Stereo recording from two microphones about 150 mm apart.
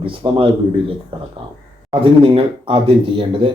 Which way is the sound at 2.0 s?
35° right (ahead or behind).